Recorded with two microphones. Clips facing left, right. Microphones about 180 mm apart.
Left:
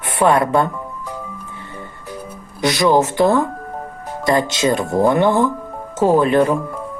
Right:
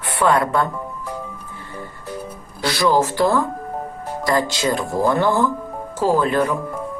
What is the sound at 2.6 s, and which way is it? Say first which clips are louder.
Speech: left 3 dB; 20° left (ahead or behind).